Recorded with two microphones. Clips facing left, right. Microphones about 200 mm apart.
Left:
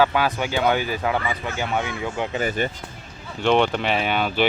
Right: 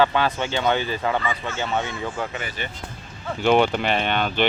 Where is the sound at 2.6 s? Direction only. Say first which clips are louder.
Left 8 dB; 45° left (ahead or behind).